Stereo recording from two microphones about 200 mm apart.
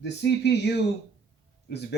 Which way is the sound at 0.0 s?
60° left (ahead or behind).